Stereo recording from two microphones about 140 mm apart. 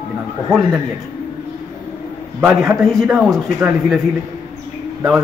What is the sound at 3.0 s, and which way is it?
Speech, 5° right (ahead or behind).